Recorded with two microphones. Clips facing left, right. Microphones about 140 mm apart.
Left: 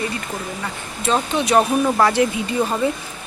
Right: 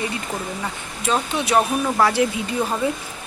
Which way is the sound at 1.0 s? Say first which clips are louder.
Left 2 dB; 10° right (ahead or behind).